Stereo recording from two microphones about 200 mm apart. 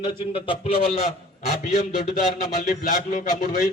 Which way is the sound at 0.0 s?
25° left (ahead or behind).